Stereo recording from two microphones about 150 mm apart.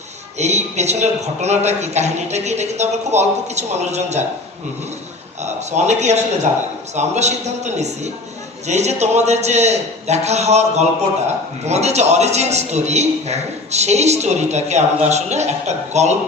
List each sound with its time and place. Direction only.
0.3 s a man's voice: 50° right (ahead or behind)
5.4 s a man's voice: 50° right (ahead or behind)